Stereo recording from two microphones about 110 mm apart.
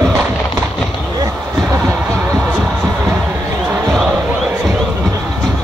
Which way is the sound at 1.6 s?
20° right (ahead or behind).